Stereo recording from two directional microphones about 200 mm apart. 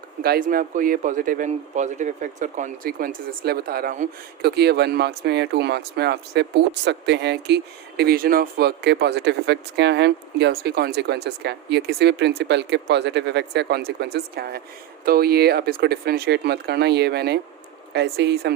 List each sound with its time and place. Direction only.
0.2 s a man's voice: 45° right (ahead or behind)
4.4 s speech: 55° right (ahead or behind)